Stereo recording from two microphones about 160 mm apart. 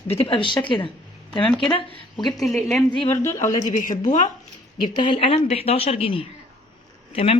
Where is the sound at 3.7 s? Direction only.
55° left (ahead or behind).